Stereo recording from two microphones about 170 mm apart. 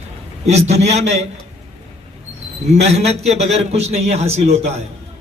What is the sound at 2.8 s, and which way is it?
A man's voice, 40° right (ahead or behind).